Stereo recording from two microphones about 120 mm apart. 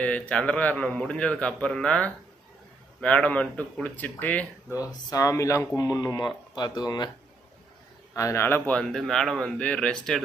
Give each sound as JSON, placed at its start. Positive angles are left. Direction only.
{"t": 0.0, "sound": "a man's voice", "side_deg": 10}
{"t": 5.1, "sound": "speech", "side_deg": 25}
{"t": 8.1, "sound": "a man's voice", "side_deg": 25}